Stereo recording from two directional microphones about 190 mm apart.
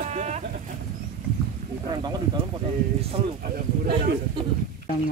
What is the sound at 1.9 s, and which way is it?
Speech, 20° right (ahead or behind).